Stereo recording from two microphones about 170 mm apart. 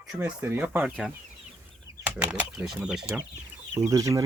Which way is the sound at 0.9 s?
5° left (ahead or behind).